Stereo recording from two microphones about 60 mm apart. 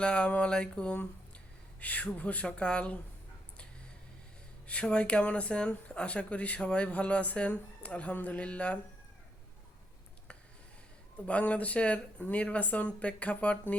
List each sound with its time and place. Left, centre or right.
0.0 s speech: centre
4.6 s speech: centre
11.3 s speech: left